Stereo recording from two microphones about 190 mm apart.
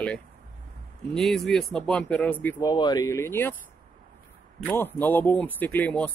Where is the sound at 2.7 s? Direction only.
20° left (ahead or behind).